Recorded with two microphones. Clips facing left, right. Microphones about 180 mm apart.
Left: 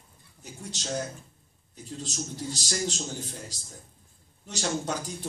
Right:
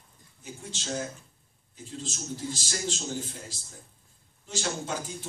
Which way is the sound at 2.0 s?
40° left (ahead or behind).